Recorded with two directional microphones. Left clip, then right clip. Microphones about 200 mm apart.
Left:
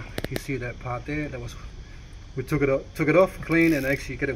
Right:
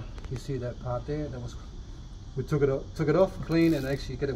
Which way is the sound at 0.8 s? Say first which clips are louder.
Left 1 dB; 40° left (ahead or behind).